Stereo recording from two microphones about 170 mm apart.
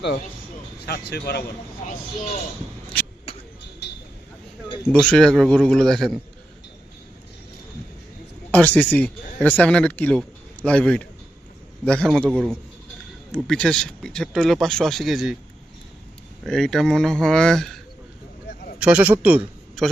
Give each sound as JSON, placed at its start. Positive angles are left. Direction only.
{"t": 0.9, "sound": "speech", "side_deg": 70}
{"t": 3.8, "sound": "vehicle", "side_deg": 75}
{"t": 4.9, "sound": "speech", "side_deg": 5}
{"t": 8.5, "sound": "a man's voice", "side_deg": 10}
{"t": 16.5, "sound": "speech", "side_deg": 0}
{"t": 18.8, "sound": "a man's voice", "side_deg": -5}
{"t": 19.8, "sound": "a man's voice", "side_deg": 0}